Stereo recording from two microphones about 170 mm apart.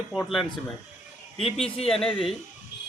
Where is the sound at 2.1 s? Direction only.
30° left (ahead or behind).